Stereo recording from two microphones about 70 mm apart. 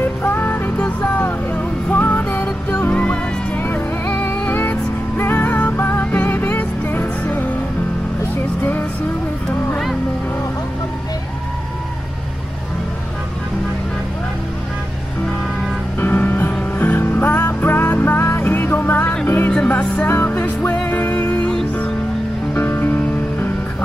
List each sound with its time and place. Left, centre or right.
0.0 s music: left
8.4 s vehicle: left
16.0 s music: left
19.5 s music: centre
20.1 s music: left
22.5 s music: left